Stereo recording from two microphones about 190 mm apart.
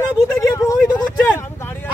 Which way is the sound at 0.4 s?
15° left (ahead or behind).